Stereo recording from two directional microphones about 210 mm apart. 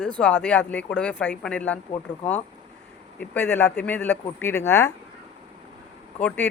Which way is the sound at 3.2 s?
10° left (ahead or behind).